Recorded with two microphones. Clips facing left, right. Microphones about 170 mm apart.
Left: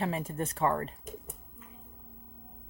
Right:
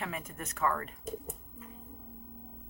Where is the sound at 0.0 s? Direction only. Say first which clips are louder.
Left 7 dB; 30° left (ahead or behind).